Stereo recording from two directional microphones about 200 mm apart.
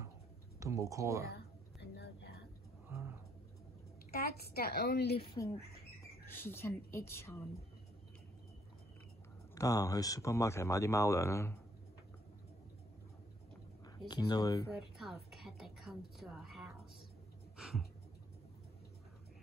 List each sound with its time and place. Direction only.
0.6 s speech: 15° right (ahead or behind)
1.3 s a sound: 55° left (ahead or behind)
2.9 s bird: 10° right (ahead or behind)
4.1 s a woman's voice: 50° left (ahead or behind)
6.2 s speech: 10° left (ahead or behind)
9.6 s speech: 15° left (ahead or behind)
13.8 s speech: 20° left (ahead or behind)
14.8 s a woman's voice: centre (ahead or behind)
17.6 s a sound: centre (ahead or behind)